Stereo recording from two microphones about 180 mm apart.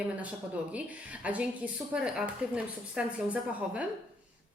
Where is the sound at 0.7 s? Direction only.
10° right (ahead or behind).